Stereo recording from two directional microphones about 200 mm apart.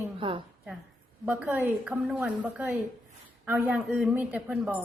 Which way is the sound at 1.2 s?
5° right (ahead or behind).